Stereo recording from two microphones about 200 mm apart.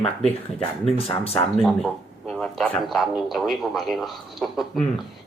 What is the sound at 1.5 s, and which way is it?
A man's voice, centre (ahead or behind).